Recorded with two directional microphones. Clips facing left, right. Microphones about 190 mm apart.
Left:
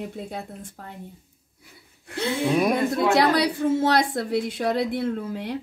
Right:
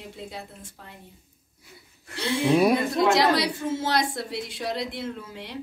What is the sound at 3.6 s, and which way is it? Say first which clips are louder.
A woman's voice: left 5 dB; 60° left (ahead or behind).